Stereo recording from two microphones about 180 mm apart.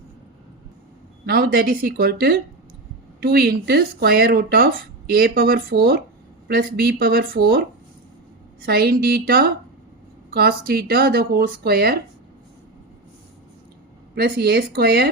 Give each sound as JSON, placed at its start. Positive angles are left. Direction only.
{"t": 1.2, "sound": "speech", "side_deg": -55}
{"t": 8.6, "sound": "speech", "side_deg": -55}
{"t": 14.2, "sound": "speech", "side_deg": -60}